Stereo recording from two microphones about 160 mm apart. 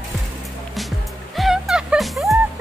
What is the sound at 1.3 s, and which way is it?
Music, centre (ahead or behind).